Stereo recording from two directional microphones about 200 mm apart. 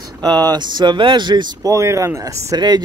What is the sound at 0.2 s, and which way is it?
Speech, 20° right (ahead or behind).